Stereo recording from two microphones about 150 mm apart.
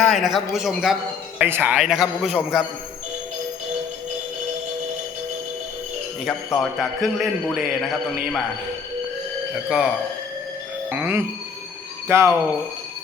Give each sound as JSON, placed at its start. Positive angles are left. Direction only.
{"t": 0.0, "sound": "a man's voice", "side_deg": 0}
{"t": 6.2, "sound": "a man's voice", "side_deg": 0}
{"t": 9.6, "sound": "a man's voice", "side_deg": -5}